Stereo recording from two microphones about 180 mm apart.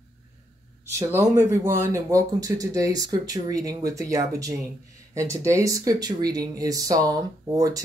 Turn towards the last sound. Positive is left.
turn(degrees=-20)  # may be behind; listen again after turning